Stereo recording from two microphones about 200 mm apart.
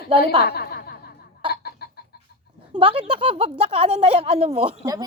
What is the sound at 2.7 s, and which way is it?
Speech, 30° right (ahead or behind).